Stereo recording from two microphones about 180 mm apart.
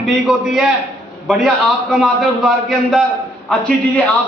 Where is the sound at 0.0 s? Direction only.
5° right (ahead or behind).